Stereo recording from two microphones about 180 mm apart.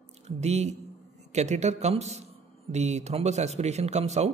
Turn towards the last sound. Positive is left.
turn(degrees=-40)  # may be behind; listen again after turning